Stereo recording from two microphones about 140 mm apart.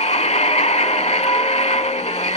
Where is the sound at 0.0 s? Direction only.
50° left (ahead or behind).